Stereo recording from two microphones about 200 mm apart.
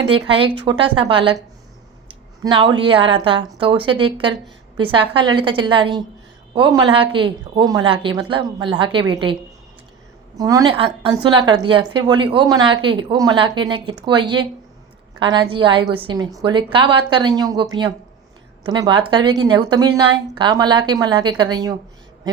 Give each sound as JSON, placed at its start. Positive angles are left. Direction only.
{"t": 0.1, "sound": "a woman's voice", "side_deg": -25}
{"t": 10.3, "sound": "a woman's voice", "side_deg": -20}